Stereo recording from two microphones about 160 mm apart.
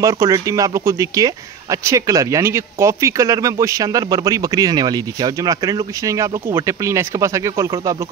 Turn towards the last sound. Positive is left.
turn(degrees=-20)  # may be behind; listen again after turning